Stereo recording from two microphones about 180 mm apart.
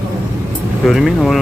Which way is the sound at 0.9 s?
Centre (ahead or behind).